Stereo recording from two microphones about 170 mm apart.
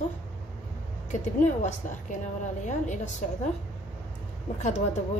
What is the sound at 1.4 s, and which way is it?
Speech, 45° left (ahead or behind).